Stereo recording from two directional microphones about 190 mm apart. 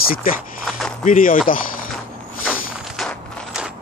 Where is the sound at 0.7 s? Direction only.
Centre (ahead or behind).